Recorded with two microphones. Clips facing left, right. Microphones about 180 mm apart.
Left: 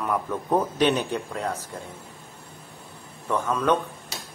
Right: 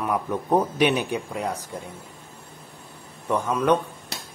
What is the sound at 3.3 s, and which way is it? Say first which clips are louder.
Speech: right 2 dB; 15° right (ahead or behind).